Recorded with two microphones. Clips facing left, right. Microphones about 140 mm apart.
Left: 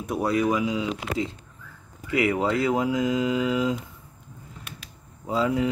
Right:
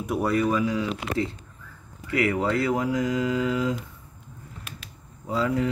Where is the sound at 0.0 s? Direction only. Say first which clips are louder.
Right 1 dB; 5° right (ahead or behind).